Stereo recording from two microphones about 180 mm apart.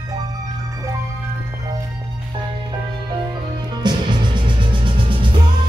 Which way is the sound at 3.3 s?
25° right (ahead or behind).